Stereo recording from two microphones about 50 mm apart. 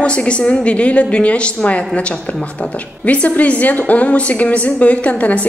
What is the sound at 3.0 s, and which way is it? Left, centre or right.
A woman's voice, left.